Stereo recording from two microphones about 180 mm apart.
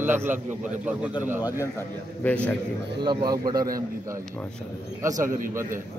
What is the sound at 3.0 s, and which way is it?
Speech, 25° right (ahead or behind).